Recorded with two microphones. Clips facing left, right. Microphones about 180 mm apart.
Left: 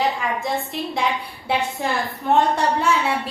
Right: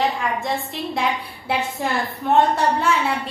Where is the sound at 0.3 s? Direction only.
Centre (ahead or behind).